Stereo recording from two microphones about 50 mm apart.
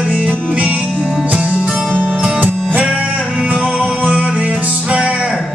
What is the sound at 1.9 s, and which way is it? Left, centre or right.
Music, centre.